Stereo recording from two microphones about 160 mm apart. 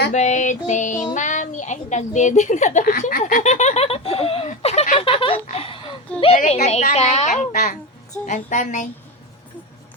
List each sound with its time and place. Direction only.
0.1 s music: 45° left (ahead or behind)
1.1 s a woman's voice: 50° left (ahead or behind)
2.9 s a sound: 65° left (ahead or behind)
3.4 s giggle: 50° left (ahead or behind); by 6.0 s 35° left (ahead or behind)
6.1 s a woman's voice: 40° left (ahead or behind)
6.9 s music: 45° left (ahead or behind)
7.5 s a child's voice: 70° left (ahead or behind)
8.1 s music: 50° left (ahead or behind)